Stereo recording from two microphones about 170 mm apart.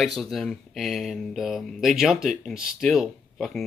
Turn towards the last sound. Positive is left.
turn(degrees=0)  # may be behind; listen again after turning